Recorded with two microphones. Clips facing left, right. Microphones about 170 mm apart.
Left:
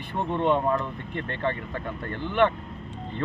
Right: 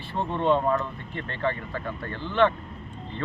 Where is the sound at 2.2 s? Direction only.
15° left (ahead or behind).